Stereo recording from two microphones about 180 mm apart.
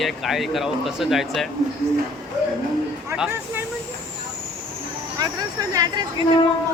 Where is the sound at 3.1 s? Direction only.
10° right (ahead or behind).